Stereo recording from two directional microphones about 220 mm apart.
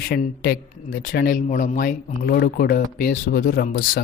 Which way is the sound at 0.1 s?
45° left (ahead or behind).